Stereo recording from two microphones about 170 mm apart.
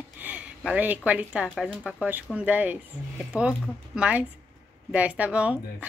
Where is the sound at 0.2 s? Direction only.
10° right (ahead or behind).